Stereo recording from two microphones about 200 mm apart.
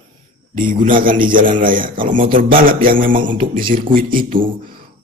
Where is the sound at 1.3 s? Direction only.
45° right (ahead or behind).